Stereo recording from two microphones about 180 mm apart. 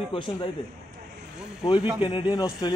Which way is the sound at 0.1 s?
30° left (ahead or behind).